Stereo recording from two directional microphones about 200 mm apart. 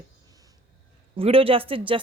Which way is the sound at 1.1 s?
30° right (ahead or behind).